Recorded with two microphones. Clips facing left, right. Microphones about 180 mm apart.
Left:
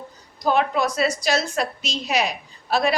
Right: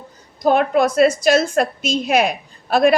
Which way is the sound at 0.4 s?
55° right (ahead or behind).